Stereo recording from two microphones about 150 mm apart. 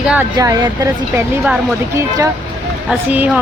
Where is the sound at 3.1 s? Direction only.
10° right (ahead or behind).